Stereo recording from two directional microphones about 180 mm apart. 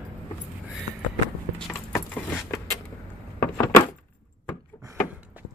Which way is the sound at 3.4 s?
15° left (ahead or behind).